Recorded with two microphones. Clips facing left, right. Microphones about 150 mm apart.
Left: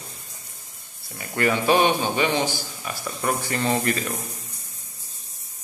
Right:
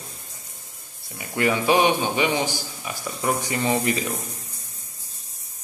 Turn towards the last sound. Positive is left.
turn(degrees=-15)  # may be behind; listen again after turning